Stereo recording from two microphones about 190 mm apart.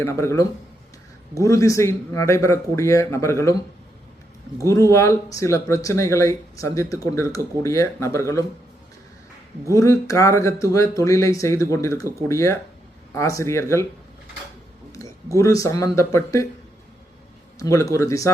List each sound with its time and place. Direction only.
0.0 s speech: 15° left (ahead or behind)
9.7 s speech: 15° left (ahead or behind)
15.4 s speech: 15° left (ahead or behind)
17.6 s speech: 15° left (ahead or behind)